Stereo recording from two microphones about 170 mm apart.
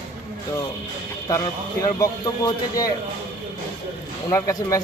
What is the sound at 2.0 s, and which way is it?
Speech, 20° left (ahead or behind).